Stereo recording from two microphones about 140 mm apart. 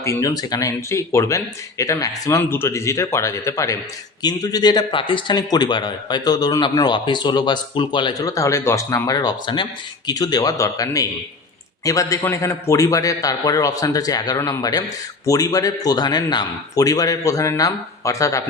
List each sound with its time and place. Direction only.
0.0 s a man's voice: 20° left (ahead or behind)